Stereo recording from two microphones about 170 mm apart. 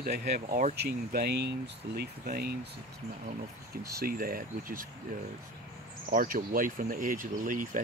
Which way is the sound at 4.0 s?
60° right (ahead or behind).